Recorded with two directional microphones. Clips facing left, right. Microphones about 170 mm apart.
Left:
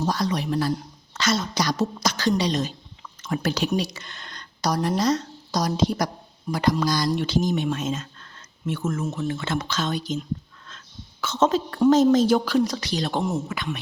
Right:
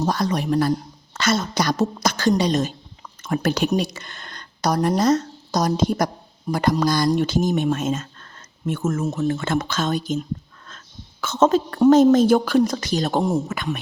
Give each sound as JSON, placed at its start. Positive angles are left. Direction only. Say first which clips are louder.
{"t": 0.0, "sound": "a woman's voice", "louder": "right 3 dB", "side_deg": -45}